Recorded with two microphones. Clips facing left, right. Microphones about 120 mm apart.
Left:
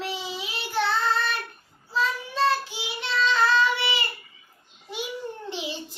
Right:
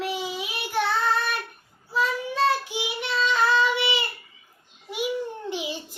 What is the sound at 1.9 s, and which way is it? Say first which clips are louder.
Child singing: right 1 dB; 15° right (ahead or behind).